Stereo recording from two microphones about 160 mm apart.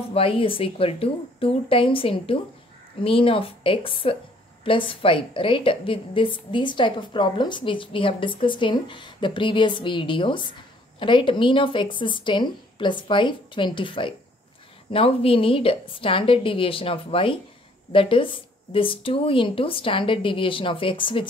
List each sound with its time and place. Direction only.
0.1 s a woman's voice: 35° left (ahead or behind)